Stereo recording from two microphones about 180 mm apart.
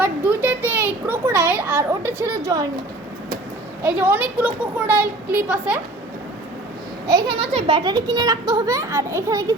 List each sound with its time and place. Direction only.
0.0 s a sound: 10° right (ahead or behind)
3.8 s a woman's voice: 10° right (ahead or behind)
7.1 s a child's voice: 20° right (ahead or behind)